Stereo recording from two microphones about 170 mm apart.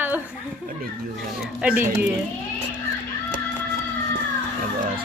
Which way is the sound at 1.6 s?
10° right (ahead or behind).